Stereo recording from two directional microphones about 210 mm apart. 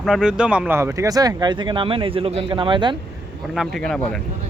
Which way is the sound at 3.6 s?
Centre (ahead or behind).